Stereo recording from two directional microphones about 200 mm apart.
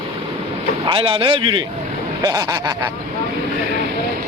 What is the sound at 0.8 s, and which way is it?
Speech, 25° right (ahead or behind).